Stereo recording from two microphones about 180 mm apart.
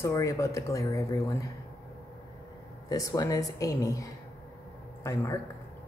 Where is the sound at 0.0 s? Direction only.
15° left (ahead or behind).